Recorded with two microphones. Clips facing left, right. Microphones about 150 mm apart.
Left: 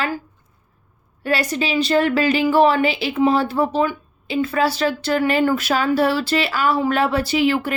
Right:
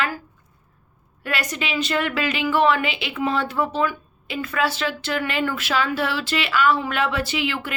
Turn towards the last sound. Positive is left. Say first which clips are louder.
# left 8 dB
turn(degrees=40)  # may be behind; listen again after turning